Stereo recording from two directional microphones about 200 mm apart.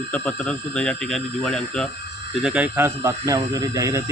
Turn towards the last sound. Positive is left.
turn(degrees=-15)  # may be behind; listen again after turning